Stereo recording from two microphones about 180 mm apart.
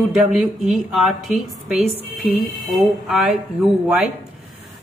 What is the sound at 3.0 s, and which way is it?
Speech, centre (ahead or behind).